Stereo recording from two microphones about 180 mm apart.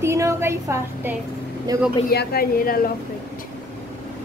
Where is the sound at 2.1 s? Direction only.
60° left (ahead or behind).